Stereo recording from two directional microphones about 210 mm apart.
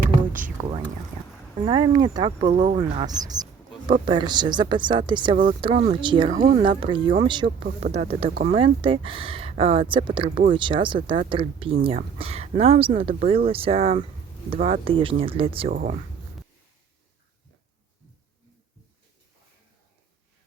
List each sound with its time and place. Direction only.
0.6 s speech: 20° right (ahead or behind)
2.4 s speech: 35° right (ahead or behind)
6.3 s speech: 40° right (ahead or behind)
6.7 s speech: 25° right (ahead or behind)
15.7 s speech: 40° right (ahead or behind)